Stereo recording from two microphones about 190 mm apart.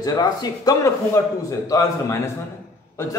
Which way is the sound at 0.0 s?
20° left (ahead or behind).